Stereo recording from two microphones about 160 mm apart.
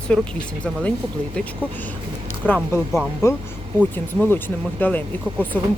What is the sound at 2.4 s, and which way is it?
Speech, 10° left (ahead or behind).